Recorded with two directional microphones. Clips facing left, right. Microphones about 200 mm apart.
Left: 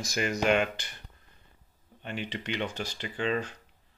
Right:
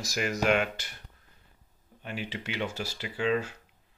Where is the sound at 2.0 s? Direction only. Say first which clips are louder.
Left 1 dB; 5° right (ahead or behind).